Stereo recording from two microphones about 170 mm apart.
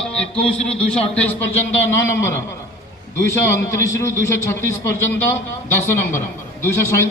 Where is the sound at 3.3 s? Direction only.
15° left (ahead or behind).